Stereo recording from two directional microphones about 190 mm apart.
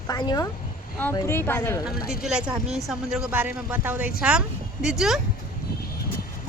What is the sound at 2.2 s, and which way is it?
Speech, 5° right (ahead or behind).